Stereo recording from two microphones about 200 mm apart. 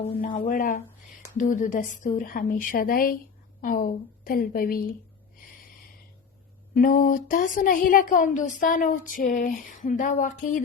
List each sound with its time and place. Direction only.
0.4 s a woman's voice: 45° left (ahead or behind)
6.7 s speech: 45° left (ahead or behind)